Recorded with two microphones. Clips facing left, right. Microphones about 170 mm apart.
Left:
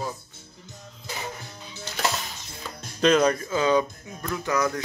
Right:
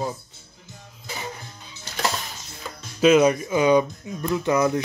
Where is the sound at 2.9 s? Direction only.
5° right (ahead or behind); by 4.8 s 20° right (ahead or behind).